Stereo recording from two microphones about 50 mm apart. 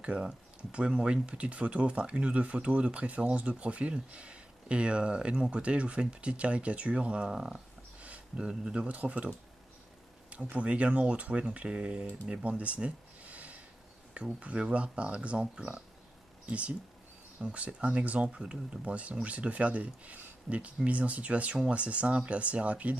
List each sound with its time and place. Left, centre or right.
0.2 s speech: right
8.0 s a sound: right
8.5 s speech: centre
8.8 s speech: right
10.3 s speech: right
12.4 s a sound: right
14.1 s speech: right
16.4 s speech: right
18.3 s speech: centre